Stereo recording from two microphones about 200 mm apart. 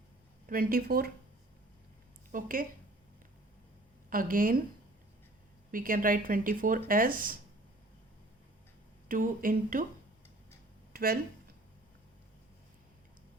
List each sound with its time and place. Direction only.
0.4 s speech: 45° right (ahead or behind)
2.3 s speech: 45° right (ahead or behind)
4.1 s speech: 45° right (ahead or behind)
5.7 s speech: 45° right (ahead or behind)
9.0 s speech: 45° right (ahead or behind)
10.9 s speech: 50° right (ahead or behind)